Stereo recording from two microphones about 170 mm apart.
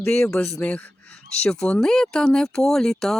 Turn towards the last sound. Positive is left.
turn(degrees=5)  # may be behind; listen again after turning